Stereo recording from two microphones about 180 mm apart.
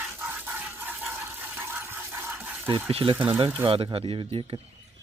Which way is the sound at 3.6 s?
30° right (ahead or behind).